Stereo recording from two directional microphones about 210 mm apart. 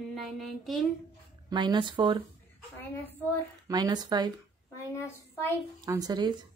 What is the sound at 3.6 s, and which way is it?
Speech, 20° right (ahead or behind).